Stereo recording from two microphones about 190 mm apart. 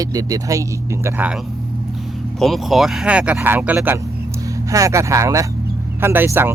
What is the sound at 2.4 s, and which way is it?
Speech, centre (ahead or behind).